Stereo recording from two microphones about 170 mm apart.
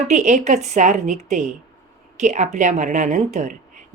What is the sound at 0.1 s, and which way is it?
A woman's voice, 45° right (ahead or behind).